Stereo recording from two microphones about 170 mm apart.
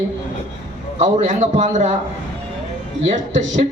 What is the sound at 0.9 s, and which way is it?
A man's voice, 45° right (ahead or behind).